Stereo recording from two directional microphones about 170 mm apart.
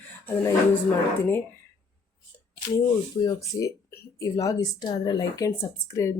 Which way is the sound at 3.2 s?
20° left (ahead or behind).